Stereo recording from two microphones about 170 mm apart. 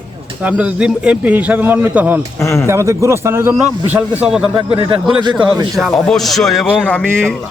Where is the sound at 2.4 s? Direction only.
15° left (ahead or behind).